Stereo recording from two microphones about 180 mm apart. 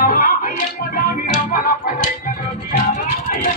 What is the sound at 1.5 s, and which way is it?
Music, 50° left (ahead or behind).